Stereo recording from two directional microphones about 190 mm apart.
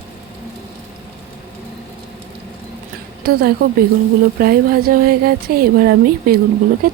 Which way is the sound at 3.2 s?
50° right (ahead or behind).